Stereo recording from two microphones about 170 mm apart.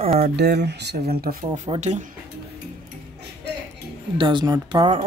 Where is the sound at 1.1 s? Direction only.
60° right (ahead or behind).